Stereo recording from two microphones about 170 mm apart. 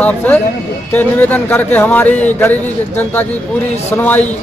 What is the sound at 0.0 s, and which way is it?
A man's voice, 10° left (ahead or behind).